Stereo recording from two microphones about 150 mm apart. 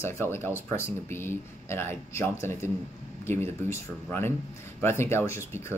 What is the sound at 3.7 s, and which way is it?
Speech, 15° left (ahead or behind).